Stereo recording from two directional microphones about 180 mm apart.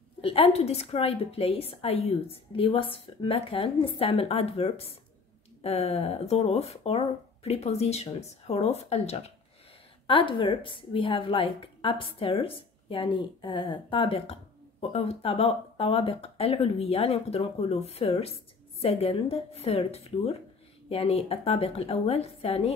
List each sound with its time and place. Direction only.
0.2 s a woman's voice: 30° left (ahead or behind)